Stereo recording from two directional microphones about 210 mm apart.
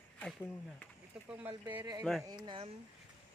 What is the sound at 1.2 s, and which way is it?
Speech, 5° right (ahead or behind).